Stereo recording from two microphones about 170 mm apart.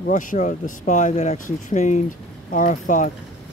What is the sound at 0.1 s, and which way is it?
Speech, 45° left (ahead or behind).